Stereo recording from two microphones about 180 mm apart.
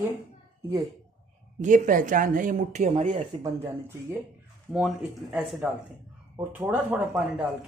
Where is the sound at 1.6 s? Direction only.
45° right (ahead or behind).